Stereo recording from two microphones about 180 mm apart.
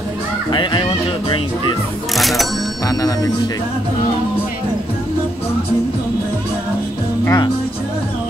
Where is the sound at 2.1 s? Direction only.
Centre (ahead or behind).